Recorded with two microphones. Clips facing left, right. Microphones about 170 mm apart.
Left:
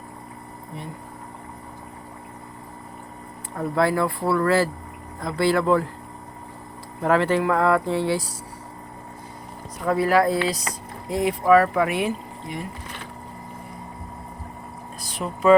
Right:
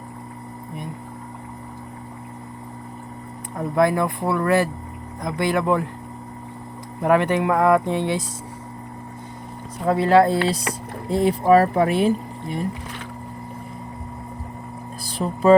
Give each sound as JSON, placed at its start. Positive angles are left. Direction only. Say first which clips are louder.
{"t": 3.8, "sound": "speech", "louder": "right 2 dB", "side_deg": -20}
{"t": 7.0, "sound": "speech", "louder": "right 1 dB", "side_deg": -20}
{"t": 9.8, "sound": "speech", "louder": "right 3 dB", "side_deg": -25}
{"t": 15.2, "sound": "speech", "louder": "right 2 dB", "side_deg": -35}